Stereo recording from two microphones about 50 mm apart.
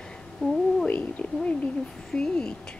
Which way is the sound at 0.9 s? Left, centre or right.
Left.